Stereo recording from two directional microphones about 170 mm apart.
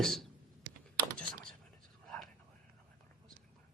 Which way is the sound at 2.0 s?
Centre (ahead or behind).